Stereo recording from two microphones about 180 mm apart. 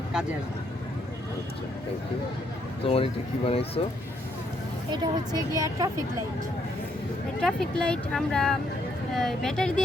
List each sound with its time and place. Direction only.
2.8 s speech: 30° left (ahead or behind)
4.9 s speech: 20° right (ahead or behind)
7.3 s speech: 5° left (ahead or behind)